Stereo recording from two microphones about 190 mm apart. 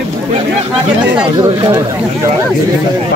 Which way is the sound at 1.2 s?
25° right (ahead or behind).